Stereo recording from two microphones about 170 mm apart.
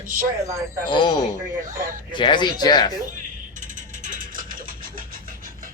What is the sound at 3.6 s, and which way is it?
Music, 50° right (ahead or behind).